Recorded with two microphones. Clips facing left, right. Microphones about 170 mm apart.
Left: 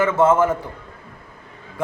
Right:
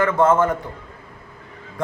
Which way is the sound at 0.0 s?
5° left (ahead or behind).